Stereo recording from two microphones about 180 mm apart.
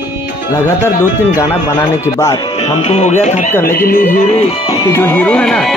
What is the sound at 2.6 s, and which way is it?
Speech, 35° left (ahead or behind).